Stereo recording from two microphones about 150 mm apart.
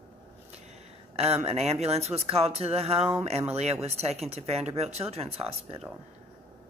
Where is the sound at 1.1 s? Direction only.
45° right (ahead or behind).